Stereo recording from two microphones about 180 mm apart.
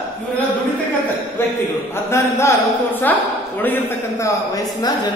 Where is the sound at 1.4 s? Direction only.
15° left (ahead or behind).